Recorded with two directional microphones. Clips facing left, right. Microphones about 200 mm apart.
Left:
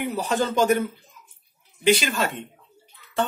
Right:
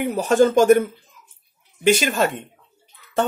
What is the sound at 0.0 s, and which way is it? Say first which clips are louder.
Speech: right 8 dB; 50° right (ahead or behind).